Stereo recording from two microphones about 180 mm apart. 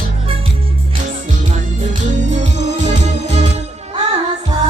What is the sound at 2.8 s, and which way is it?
Music, 40° right (ahead or behind).